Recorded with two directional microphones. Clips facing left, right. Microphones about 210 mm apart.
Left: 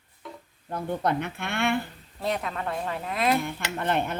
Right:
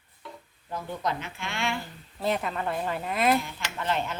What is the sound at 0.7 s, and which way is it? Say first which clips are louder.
A woman's voice: left 4 dB; 55° left (ahead or behind).